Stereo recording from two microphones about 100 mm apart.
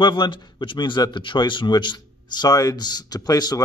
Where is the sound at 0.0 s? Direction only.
50° left (ahead or behind).